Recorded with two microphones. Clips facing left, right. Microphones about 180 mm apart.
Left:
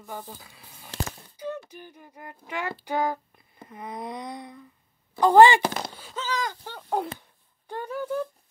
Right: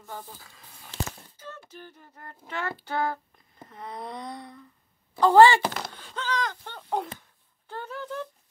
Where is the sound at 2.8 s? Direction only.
15° left (ahead or behind).